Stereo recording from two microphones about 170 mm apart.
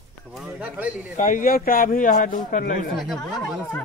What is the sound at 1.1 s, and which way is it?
A man's voice, 50° left (ahead or behind).